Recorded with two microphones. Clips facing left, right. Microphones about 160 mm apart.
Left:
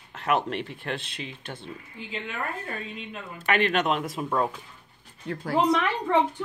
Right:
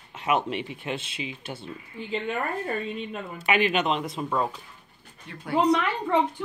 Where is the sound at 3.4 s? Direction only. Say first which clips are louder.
Even; 5° right (ahead or behind).